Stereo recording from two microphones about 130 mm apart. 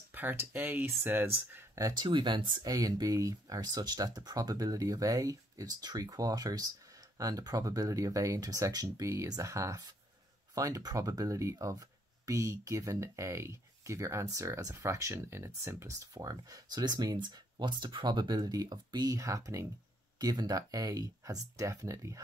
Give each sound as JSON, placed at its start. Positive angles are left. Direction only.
{"t": 0.1, "sound": "speech", "side_deg": -15}
{"t": 1.8, "sound": "speech", "side_deg": -25}